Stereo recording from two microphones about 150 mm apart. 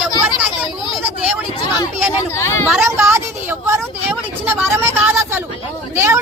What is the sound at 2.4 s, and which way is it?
Speech, 15° left (ahead or behind).